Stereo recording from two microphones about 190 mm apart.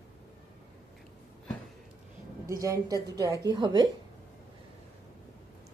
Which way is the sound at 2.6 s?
15° right (ahead or behind).